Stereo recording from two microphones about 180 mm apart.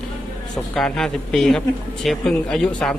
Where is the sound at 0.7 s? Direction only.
5° left (ahead or behind).